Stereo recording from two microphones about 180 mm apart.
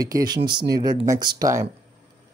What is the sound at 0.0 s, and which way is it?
Speech, 20° right (ahead or behind).